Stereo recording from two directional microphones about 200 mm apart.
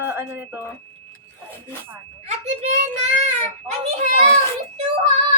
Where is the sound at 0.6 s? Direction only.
10° left (ahead or behind).